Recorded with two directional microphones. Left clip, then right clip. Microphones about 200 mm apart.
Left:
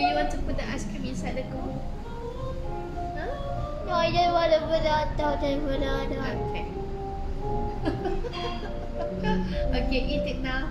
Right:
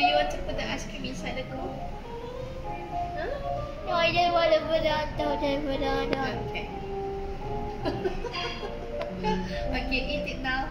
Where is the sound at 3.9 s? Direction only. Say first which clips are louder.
Even; 20° left (ahead or behind).